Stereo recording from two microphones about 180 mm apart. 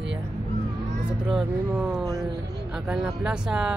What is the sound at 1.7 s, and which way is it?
Speech, 5° right (ahead or behind).